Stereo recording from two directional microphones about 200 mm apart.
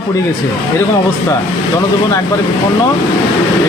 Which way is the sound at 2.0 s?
15° left (ahead or behind).